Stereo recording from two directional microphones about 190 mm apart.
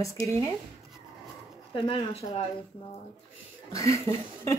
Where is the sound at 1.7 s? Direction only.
25° left (ahead or behind).